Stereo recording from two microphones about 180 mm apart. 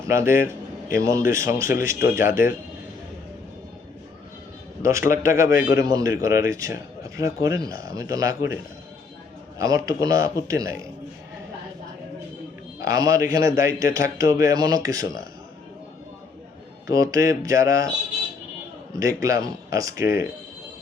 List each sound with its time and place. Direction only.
0.1 s speech: 15° right (ahead or behind)
4.8 s a man's voice: 15° right (ahead or behind)
5.0 s a man's voice: 50° left (ahead or behind)
5.3 s a man's voice: 15° right (ahead or behind)
9.6 s a man's voice: 20° right (ahead or behind)
12.9 s a man's voice: 20° right (ahead or behind)
16.8 s speech: 20° right (ahead or behind)
18.9 s speech: 20° right (ahead or behind)